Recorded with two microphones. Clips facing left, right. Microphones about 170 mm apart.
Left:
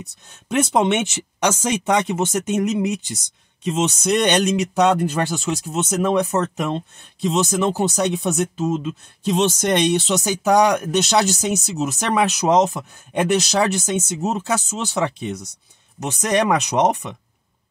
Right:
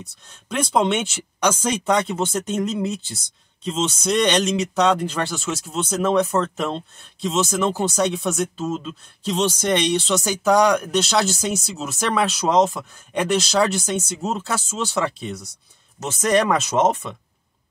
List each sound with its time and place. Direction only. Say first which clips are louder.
0.0 s speech: left 2 dB; 20° left (ahead or behind)